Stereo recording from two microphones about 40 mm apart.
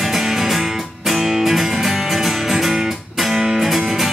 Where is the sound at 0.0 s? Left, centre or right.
Centre.